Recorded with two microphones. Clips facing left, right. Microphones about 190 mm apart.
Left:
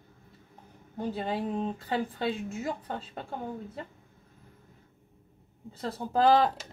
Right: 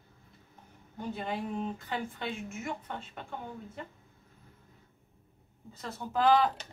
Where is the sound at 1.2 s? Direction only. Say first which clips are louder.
Left 3 dB; 35° left (ahead or behind).